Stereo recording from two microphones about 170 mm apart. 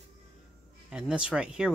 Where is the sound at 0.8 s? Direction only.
5° right (ahead or behind).